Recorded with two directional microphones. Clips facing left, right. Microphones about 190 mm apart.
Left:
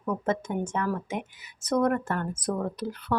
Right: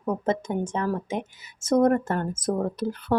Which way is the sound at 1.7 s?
45° right (ahead or behind).